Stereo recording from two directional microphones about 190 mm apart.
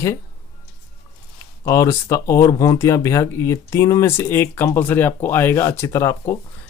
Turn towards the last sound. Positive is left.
turn(degrees=15)  # may be behind; listen again after turning